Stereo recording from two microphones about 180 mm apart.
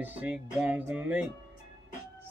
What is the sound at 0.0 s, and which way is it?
Speech, 10° right (ahead or behind).